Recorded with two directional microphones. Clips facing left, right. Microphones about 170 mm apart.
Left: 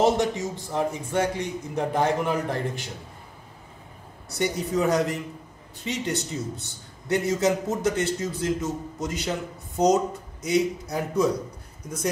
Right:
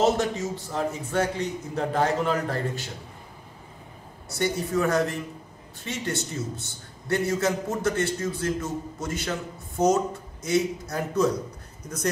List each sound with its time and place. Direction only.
0.0 s a man's voice: 15° left (ahead or behind)
4.3 s a man's voice: 15° left (ahead or behind)